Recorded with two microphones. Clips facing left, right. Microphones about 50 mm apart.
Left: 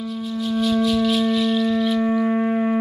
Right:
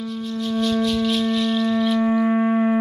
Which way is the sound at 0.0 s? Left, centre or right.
Centre.